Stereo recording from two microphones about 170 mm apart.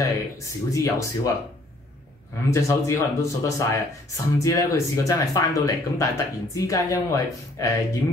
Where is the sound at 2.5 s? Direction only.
15° left (ahead or behind).